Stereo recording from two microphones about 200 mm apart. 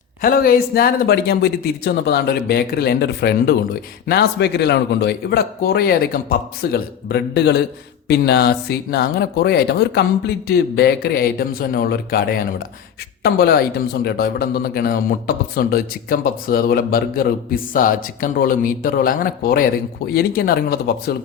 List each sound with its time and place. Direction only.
0.2 s a man's voice: 45° left (ahead or behind)